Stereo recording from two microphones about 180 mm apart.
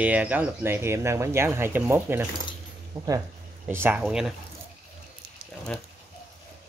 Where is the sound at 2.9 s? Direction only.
25° right (ahead or behind).